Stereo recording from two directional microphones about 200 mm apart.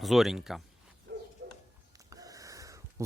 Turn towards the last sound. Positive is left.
turn(degrees=-15)  # may be behind; listen again after turning